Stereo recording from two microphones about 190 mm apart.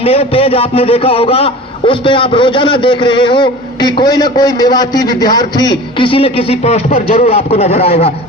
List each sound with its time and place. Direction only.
0.0 s a man's voice: 30° left (ahead or behind)